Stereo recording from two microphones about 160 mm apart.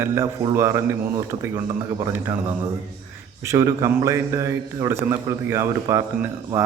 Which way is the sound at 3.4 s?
20° right (ahead or behind).